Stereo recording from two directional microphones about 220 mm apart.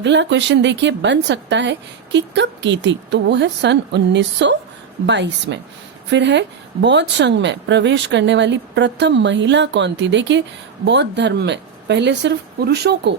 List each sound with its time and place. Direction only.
0.0 s speech: 55° right (ahead or behind)